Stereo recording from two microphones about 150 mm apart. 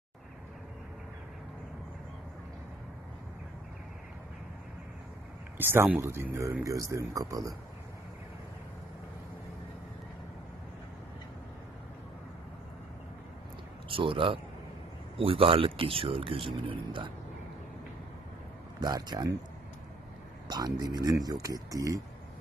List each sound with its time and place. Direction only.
5.6 s speech: 15° right (ahead or behind)
13.8 s speech: 35° right (ahead or behind)
18.8 s speech: 25° right (ahead or behind)
20.4 s speech: 25° right (ahead or behind)